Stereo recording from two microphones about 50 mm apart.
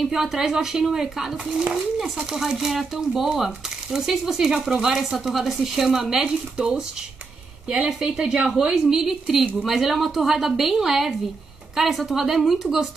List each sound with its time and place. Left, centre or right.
0.0 s speech: centre
2.4 s a woman's voice: centre